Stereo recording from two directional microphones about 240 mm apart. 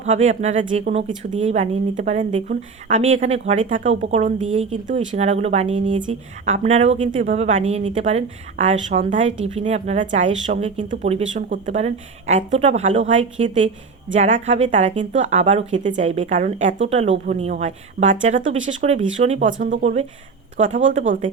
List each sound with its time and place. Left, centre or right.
0.0 s speech: right